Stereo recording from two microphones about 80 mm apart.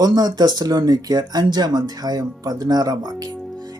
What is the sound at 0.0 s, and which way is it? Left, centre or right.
Speech, right.